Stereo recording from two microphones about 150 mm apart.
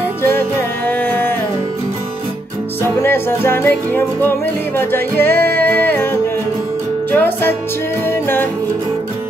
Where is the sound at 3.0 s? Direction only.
15° left (ahead or behind).